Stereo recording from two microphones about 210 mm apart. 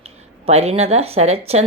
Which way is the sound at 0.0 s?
30° right (ahead or behind).